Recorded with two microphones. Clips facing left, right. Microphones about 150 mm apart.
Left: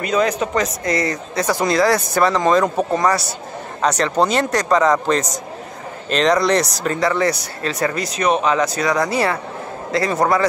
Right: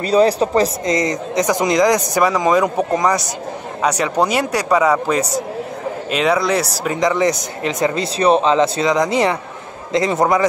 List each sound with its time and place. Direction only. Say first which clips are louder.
0.0 s speech: right 5 dB; 35° right (ahead or behind)
0.8 s speech: right 2 dB; 20° right (ahead or behind)
7.0 s speech: right 3 dB; 15° right (ahead or behind)